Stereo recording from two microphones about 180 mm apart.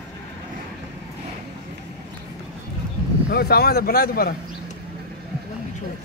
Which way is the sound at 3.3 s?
60° left (ahead or behind).